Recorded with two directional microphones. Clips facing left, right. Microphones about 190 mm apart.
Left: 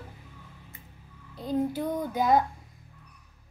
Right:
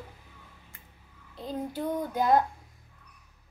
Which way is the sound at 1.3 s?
Centre (ahead or behind).